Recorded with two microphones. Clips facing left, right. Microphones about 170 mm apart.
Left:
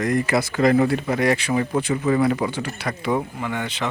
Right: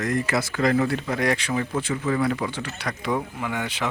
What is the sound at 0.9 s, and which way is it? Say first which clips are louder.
Speech: left 4 dB; 10° left (ahead or behind).